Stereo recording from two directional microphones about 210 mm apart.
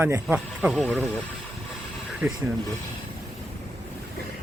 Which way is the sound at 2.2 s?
10° right (ahead or behind).